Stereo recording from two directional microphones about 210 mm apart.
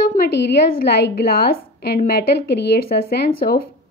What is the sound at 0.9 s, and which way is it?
A woman's voice, 50° left (ahead or behind).